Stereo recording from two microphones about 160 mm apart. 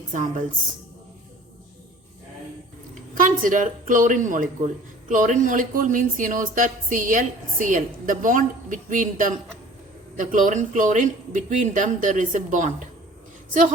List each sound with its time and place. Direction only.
0.1 s speech: 55° right (ahead or behind)
3.2 s a man's voice: 55° right (ahead or behind)